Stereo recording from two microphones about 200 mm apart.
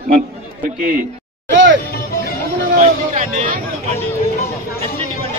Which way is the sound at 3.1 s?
40° right (ahead or behind).